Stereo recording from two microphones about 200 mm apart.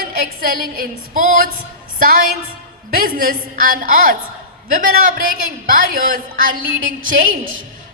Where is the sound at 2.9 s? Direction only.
45° right (ahead or behind).